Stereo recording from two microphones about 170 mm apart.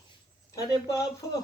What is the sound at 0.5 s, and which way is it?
Speech, 20° left (ahead or behind).